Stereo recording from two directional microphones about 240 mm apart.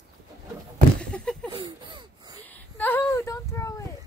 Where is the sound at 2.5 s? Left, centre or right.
Centre.